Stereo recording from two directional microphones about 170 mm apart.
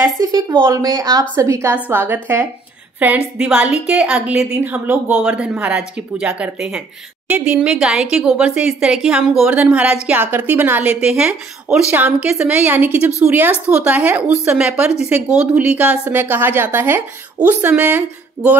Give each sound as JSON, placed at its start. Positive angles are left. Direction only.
{"t": 0.0, "sound": "a woman's voice", "side_deg": -20}